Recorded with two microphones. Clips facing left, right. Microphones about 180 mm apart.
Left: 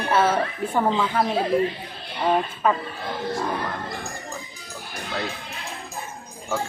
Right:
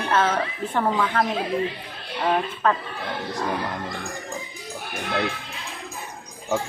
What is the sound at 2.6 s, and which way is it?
Speech, 10° left (ahead or behind).